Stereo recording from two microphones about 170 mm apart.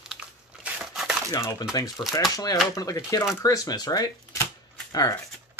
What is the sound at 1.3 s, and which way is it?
Speech, 20° left (ahead or behind).